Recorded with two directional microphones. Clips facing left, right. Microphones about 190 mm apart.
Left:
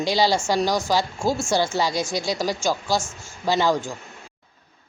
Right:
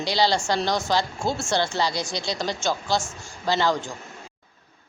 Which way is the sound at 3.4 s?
15° left (ahead or behind).